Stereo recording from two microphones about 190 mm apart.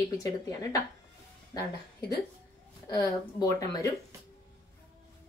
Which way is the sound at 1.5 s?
20° left (ahead or behind).